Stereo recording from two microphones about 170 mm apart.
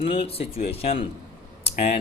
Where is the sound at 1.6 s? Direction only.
40° left (ahead or behind).